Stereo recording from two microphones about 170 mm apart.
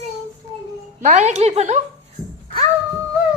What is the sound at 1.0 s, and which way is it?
Speech, 40° right (ahead or behind).